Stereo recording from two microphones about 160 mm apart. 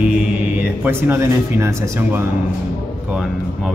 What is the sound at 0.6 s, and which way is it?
Speech, 15° right (ahead or behind).